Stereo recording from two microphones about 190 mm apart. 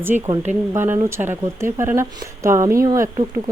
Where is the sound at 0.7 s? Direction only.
15° right (ahead or behind).